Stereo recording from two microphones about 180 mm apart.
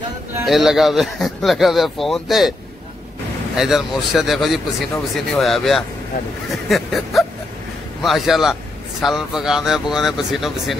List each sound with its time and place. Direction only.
0.5 s speech: centre (ahead or behind)
3.5 s speech: centre (ahead or behind)